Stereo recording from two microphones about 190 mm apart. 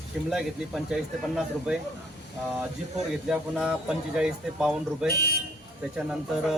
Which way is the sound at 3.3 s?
5° right (ahead or behind).